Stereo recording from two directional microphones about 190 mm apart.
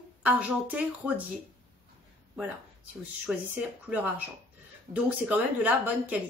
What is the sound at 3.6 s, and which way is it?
A woman's voice, 5° right (ahead or behind).